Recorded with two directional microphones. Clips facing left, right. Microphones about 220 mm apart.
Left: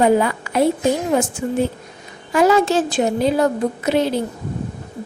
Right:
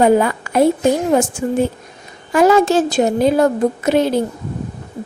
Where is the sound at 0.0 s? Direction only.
50° right (ahead or behind).